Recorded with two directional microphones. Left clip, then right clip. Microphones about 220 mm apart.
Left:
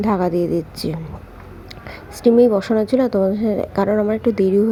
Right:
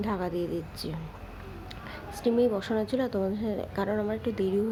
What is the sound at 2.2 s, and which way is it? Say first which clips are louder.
A woman's voice: left 13 dB; 30° left (ahead or behind).